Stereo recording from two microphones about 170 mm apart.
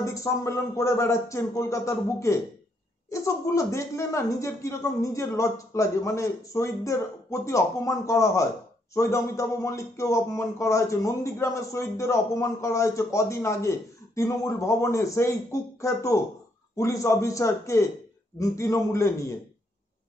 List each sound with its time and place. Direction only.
0.0 s speech: 15° left (ahead or behind)